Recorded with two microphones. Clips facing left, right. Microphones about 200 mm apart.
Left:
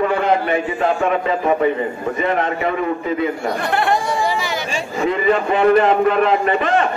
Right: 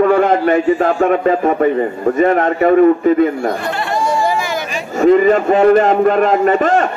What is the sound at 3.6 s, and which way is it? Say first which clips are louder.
Chatter: left 2 dB; 55° left (ahead or behind).